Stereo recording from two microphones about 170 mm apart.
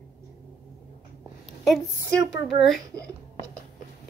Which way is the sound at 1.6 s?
Centre (ahead or behind).